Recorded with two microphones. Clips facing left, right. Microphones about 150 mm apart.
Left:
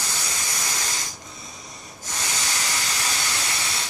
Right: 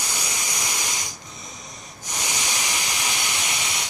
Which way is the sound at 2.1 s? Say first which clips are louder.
Right 1 dB; 15° right (ahead or behind).